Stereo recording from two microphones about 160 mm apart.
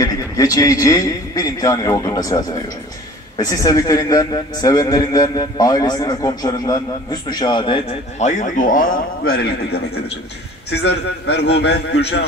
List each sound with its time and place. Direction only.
0.0 s a man's voice: 20° left (ahead or behind)
8.2 s speech: 50° left (ahead or behind); by 9.8 s 75° left (ahead or behind)
10.7 s a man's voice: 90° left